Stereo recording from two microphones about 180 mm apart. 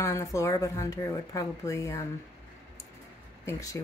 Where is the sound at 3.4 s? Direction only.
15° left (ahead or behind).